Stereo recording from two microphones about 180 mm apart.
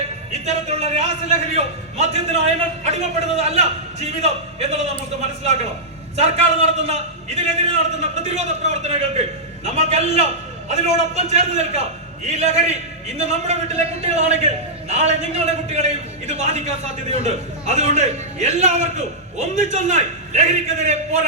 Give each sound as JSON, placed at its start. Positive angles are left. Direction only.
{"t": 0.4, "sound": "a man's voice", "side_deg": -35}